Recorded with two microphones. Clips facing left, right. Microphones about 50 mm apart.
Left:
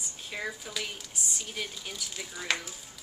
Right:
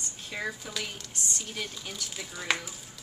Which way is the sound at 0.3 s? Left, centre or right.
Centre.